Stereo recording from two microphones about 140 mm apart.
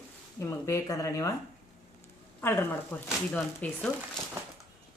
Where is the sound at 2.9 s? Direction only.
10° left (ahead or behind).